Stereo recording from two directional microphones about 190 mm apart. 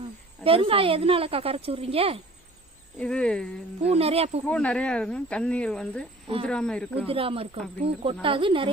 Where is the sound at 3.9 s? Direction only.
30° right (ahead or behind).